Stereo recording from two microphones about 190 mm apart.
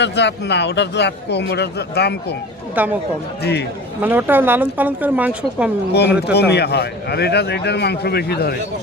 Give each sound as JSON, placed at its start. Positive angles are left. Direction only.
{"t": 0.0, "sound": "a man's voice", "side_deg": 65}
{"t": 2.7, "sound": "speech", "side_deg": -10}
{"t": 3.4, "sound": "a man's voice", "side_deg": 60}
{"t": 4.0, "sound": "speech", "side_deg": -10}
{"t": 6.3, "sound": "a man's voice", "side_deg": 60}